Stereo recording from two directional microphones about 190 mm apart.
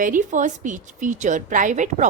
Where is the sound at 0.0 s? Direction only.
45° right (ahead or behind).